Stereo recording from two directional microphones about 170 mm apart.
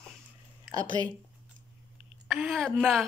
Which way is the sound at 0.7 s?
30° left (ahead or behind).